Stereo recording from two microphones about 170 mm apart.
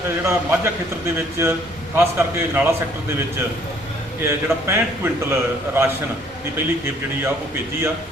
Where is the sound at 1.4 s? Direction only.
15° right (ahead or behind).